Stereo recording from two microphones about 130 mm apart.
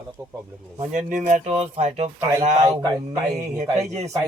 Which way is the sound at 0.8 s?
80° right.